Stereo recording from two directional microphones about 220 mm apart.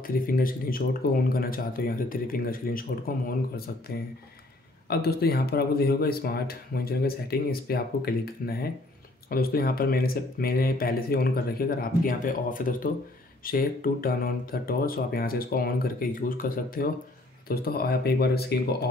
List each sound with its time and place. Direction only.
0.0 s speech: 40° left (ahead or behind)